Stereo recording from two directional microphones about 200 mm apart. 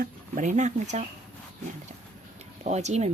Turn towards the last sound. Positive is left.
turn(degrees=-35)  # may be behind; listen again after turning